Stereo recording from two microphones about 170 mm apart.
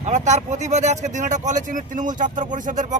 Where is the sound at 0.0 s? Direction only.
45° right (ahead or behind).